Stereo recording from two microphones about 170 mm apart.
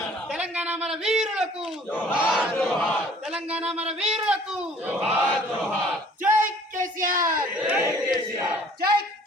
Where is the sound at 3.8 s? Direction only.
40° right (ahead or behind).